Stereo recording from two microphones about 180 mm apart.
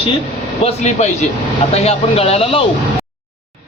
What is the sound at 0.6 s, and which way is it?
Speech, 40° left (ahead or behind).